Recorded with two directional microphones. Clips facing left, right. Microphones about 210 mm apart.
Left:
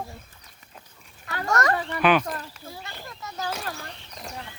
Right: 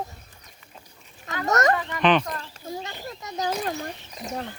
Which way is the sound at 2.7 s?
20° right (ahead or behind).